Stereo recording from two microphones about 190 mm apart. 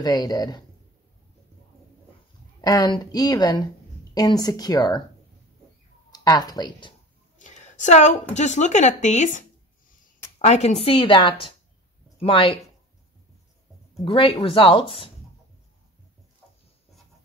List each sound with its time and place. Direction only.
0.0 s a woman's voice: 20° left (ahead or behind)
2.6 s a woman's voice: 20° left (ahead or behind)
6.1 s speech: 20° left (ahead or behind)
7.3 s a sound: 40° left (ahead or behind)
8.4 s speech: 40° left (ahead or behind)
10.4 s a woman's voice: 35° left (ahead or behind)
14.0 s a woman's voice: 25° left (ahead or behind)